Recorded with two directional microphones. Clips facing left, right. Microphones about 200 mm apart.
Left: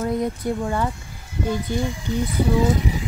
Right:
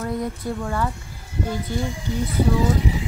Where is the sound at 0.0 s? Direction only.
20° left (ahead or behind).